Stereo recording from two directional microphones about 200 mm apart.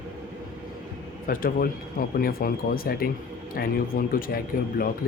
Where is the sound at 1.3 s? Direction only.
45° left (ahead or behind).